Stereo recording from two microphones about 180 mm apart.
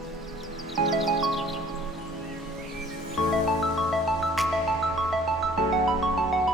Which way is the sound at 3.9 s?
Centre (ahead or behind).